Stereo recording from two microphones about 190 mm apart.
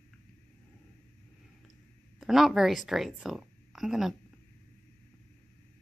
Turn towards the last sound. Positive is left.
turn(degrees=0)  # may be behind; listen again after turning